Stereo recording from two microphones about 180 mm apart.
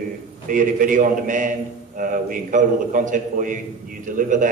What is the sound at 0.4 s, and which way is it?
A man's voice, 45° right (ahead or behind).